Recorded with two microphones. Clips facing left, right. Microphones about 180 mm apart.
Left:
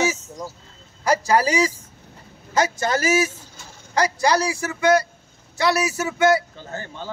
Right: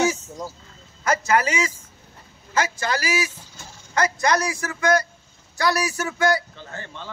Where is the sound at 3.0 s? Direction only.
45° left (ahead or behind).